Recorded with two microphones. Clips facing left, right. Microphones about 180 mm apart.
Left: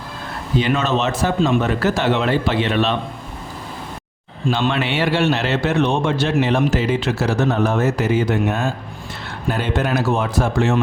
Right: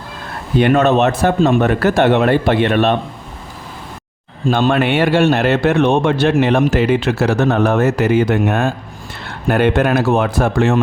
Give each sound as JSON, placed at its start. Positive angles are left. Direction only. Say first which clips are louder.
{"t": 0.6, "sound": "a man's voice", "louder": "right 8 dB", "side_deg": -60}
{"t": 4.6, "sound": "a man's voice", "louder": "right 7 dB", "side_deg": -50}